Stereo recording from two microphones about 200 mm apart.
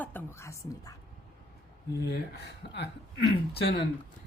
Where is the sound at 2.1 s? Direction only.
55° left (ahead or behind).